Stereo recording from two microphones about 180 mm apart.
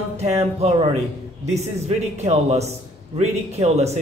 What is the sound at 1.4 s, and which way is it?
Speech, 40° right (ahead or behind).